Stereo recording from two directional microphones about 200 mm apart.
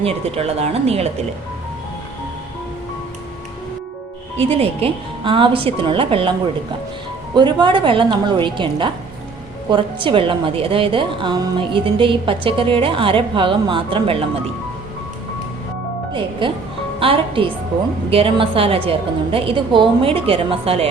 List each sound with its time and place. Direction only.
0.0 s speech: 30° right (ahead or behind)
4.4 s a woman's voice: 30° right (ahead or behind)
7.3 s a woman's voice: 20° right (ahead or behind)
16.4 s a woman's voice: 25° right (ahead or behind)